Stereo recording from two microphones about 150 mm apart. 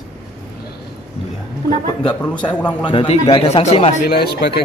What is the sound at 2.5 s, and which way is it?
Speech, 10° left (ahead or behind).